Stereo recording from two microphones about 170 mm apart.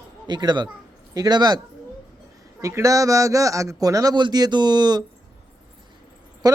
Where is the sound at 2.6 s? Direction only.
20° right (ahead or behind).